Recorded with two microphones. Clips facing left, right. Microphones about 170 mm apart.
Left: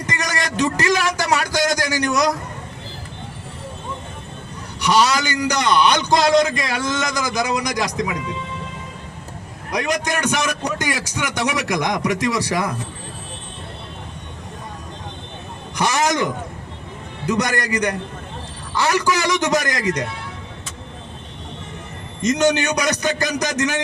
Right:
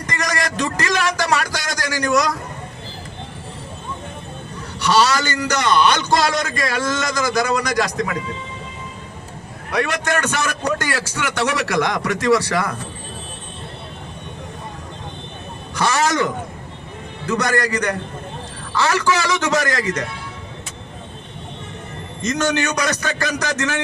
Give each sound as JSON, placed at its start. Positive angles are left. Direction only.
{"t": 0.0, "sound": "a man's voice", "side_deg": 25}
{"t": 4.8, "sound": "a man's voice", "side_deg": 15}
{"t": 9.7, "sound": "a man's voice", "side_deg": 15}
{"t": 15.7, "sound": "a man's voice", "side_deg": 15}
{"t": 22.2, "sound": "a man's voice", "side_deg": 20}